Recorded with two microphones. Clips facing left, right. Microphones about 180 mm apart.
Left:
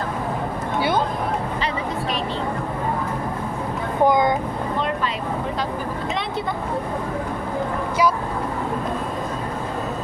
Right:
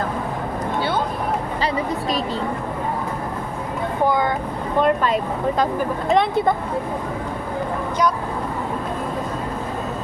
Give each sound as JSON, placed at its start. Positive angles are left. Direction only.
{"t": 4.0, "sound": "vehicle", "side_deg": 15}
{"t": 4.8, "sound": "a sound", "side_deg": -45}
{"t": 6.1, "sound": "speech", "side_deg": -50}